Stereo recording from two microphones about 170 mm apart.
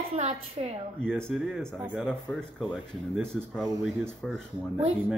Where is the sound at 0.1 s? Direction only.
40° right (ahead or behind).